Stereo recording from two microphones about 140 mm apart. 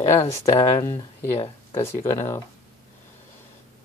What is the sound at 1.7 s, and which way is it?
Speech, 20° left (ahead or behind).